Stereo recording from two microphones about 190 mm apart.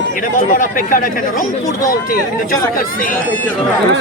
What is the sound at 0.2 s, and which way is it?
Speech, 45° left (ahead or behind).